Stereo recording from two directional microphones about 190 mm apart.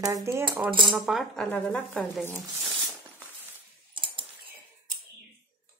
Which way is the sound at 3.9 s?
25° right (ahead or behind).